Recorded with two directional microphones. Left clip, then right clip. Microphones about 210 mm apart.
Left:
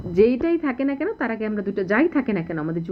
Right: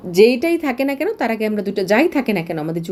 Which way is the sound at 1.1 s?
45° right (ahead or behind).